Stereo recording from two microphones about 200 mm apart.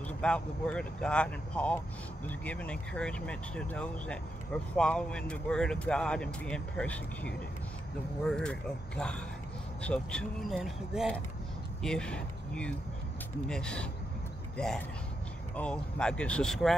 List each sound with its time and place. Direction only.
0.2 s speech: 5° left (ahead or behind)
15.5 s speech: 5° left (ahead or behind)